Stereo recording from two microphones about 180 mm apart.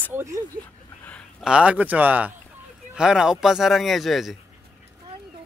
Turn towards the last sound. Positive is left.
turn(degrees=0)  # may be behind; listen again after turning